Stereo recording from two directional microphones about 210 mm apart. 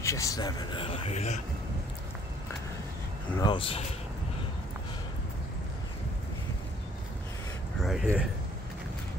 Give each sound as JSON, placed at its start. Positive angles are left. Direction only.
{"t": 0.0, "sound": "speech", "side_deg": 15}
{"t": 3.3, "sound": "speech", "side_deg": 20}
{"t": 7.8, "sound": "speech", "side_deg": 0}